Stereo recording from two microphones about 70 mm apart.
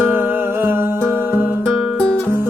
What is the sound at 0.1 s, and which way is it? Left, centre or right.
Music, right.